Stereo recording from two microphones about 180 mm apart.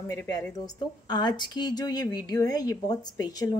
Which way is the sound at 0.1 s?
15° left (ahead or behind).